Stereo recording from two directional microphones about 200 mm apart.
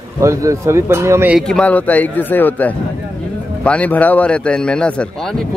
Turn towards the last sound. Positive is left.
turn(degrees=5)  # may be behind; listen again after turning